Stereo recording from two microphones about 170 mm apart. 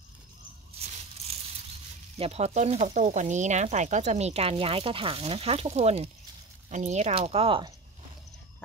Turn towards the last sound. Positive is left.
turn(degrees=-35)  # may be behind; listen again after turning